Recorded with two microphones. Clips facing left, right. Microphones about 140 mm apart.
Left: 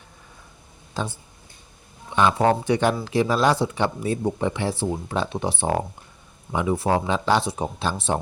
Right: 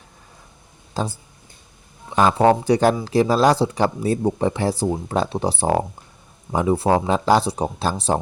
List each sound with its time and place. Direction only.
0.9 s speech: 35° right (ahead or behind)